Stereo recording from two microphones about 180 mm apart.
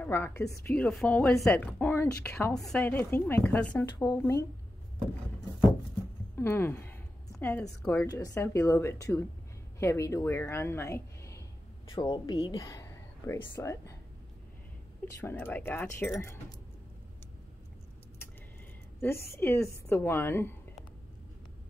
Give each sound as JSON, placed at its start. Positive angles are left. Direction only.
{"t": 0.0, "sound": "a woman's voice", "side_deg": 10}
{"t": 6.3, "sound": "a sound", "side_deg": 15}
{"t": 7.8, "sound": "a woman's voice", "side_deg": 5}
{"t": 8.1, "sound": "a woman's voice", "side_deg": 20}
{"t": 15.1, "sound": "a woman's voice", "side_deg": 10}
{"t": 18.9, "sound": "a woman's voice", "side_deg": 15}